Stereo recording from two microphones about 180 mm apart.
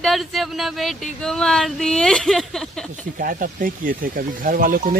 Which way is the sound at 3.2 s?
50° right (ahead or behind).